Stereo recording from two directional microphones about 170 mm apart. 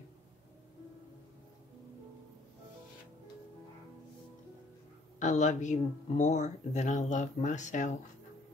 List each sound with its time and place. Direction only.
5.2 s speech: 45° left (ahead or behind)